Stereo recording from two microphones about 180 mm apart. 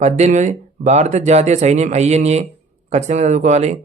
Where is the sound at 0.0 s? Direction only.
40° right (ahead or behind).